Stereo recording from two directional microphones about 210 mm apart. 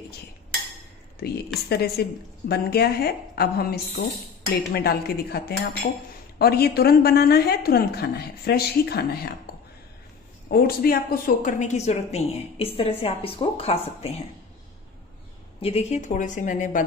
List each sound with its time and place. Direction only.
1.7 s a woman's voice: 50° left (ahead or behind)
10.5 s a woman's voice: 45° left (ahead or behind); by 14.1 s 30° left (ahead or behind)
15.6 s a woman's voice: 30° left (ahead or behind)